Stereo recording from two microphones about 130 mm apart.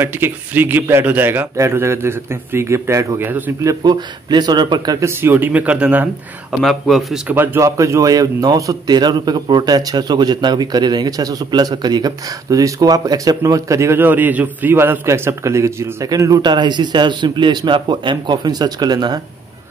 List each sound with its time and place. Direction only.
0.0 s a man's voice: 15° right (ahead or behind)
3.6 s speech: 35° right (ahead or behind)
5.2 s a man's voice: 15° right (ahead or behind)
6.6 s speech: centre (ahead or behind)
7.2 s a man's voice: 20° right (ahead or behind)